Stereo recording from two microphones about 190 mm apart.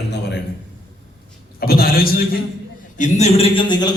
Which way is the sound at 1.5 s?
50° left (ahead or behind).